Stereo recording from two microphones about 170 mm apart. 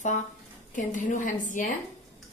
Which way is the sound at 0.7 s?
50° left (ahead or behind).